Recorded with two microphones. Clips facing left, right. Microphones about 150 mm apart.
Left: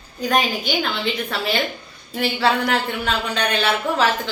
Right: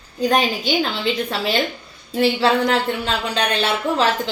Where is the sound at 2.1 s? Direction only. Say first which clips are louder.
Right 3 dB; 30° right (ahead or behind).